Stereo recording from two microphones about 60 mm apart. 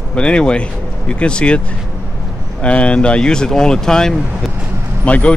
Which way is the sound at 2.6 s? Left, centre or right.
Centre.